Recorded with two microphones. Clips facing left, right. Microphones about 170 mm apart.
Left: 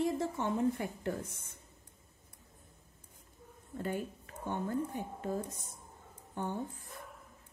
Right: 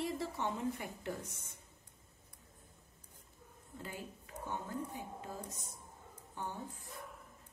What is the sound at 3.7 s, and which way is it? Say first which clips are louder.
Speech: left 10 dB; 60° left (ahead or behind).